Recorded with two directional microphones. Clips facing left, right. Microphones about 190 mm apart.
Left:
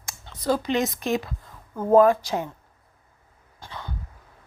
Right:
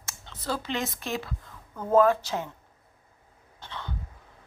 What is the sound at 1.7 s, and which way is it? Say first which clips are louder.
Speech: left 5 dB; 30° left (ahead or behind).